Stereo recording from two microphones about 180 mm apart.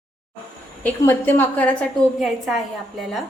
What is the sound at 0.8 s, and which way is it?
A woman's voice, 10° left (ahead or behind).